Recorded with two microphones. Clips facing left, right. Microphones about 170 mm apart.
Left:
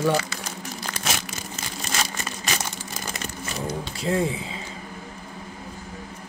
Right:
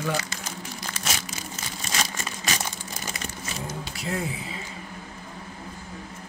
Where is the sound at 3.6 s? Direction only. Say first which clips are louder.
Left 7 dB; 30° left (ahead or behind).